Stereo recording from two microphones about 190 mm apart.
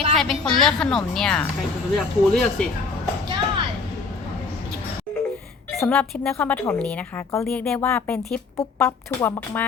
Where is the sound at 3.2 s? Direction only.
25° right (ahead or behind).